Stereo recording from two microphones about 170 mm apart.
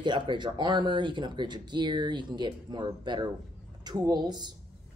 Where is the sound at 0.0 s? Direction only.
25° right (ahead or behind).